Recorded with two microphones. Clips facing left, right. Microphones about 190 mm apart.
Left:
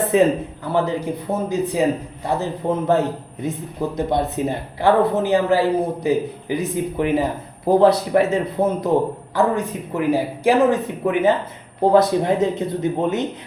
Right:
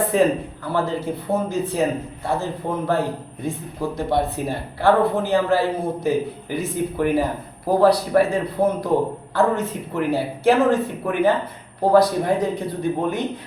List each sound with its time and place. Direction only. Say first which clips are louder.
0.1 s a man's voice: left 4 dB; 20° left (ahead or behind)